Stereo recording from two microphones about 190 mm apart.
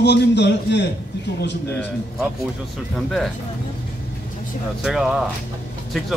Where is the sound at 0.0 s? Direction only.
65° left (ahead or behind).